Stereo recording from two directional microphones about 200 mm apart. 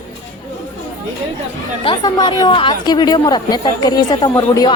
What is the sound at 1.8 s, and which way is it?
Speech, 25° left (ahead or behind).